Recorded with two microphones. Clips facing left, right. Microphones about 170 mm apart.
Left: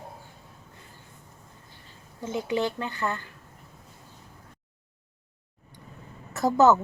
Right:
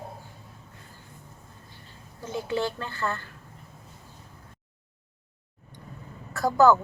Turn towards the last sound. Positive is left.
turn(degrees=20)  # may be behind; listen again after turning